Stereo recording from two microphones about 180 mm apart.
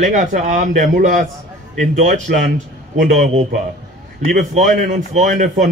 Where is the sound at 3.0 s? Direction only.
35° right (ahead or behind).